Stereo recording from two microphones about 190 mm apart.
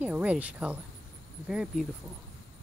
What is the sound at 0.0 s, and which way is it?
Speech, 10° right (ahead or behind).